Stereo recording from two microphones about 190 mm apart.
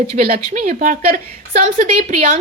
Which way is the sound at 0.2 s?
45° right (ahead or behind).